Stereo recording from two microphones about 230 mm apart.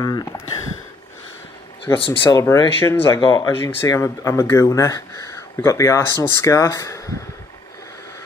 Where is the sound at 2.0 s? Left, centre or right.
Centre.